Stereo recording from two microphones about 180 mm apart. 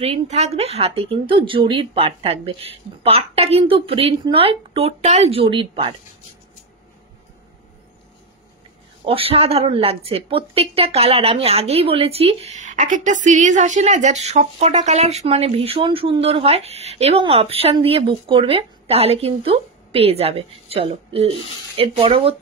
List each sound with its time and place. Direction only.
0.0 s a woman's voice: 35° right (ahead or behind)
9.0 s a woman's voice: 30° right (ahead or behind)